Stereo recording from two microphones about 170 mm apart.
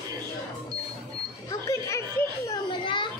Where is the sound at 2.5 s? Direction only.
25° left (ahead or behind).